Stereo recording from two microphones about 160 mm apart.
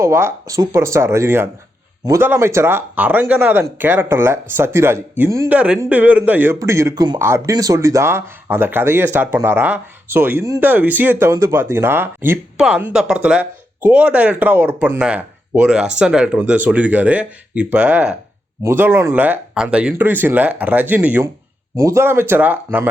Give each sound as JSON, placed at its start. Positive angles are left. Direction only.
{"t": 0.0, "sound": "speech", "side_deg": -15}